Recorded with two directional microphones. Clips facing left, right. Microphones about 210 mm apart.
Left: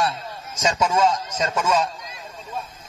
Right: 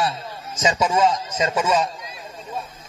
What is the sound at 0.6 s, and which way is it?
A man's voice, 10° right (ahead or behind).